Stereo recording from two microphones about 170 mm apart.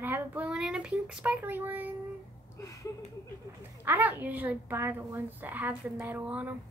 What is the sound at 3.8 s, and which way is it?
A child's voice, 10° right (ahead or behind).